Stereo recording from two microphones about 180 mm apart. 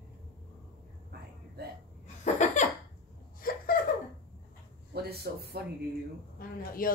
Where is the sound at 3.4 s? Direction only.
55° left (ahead or behind).